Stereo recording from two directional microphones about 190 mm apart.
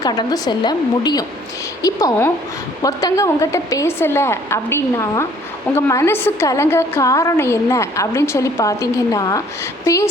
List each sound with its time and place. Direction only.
0.0 s a woman's voice: 20° left (ahead or behind)